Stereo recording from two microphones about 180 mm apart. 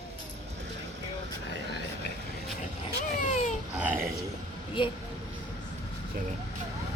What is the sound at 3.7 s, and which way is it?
Burping, 10° right (ahead or behind).